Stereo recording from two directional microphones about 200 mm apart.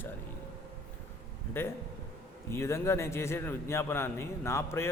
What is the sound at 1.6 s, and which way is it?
A man's voice, 10° left (ahead or behind).